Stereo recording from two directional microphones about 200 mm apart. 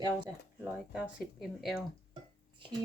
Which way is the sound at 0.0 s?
20° right (ahead or behind).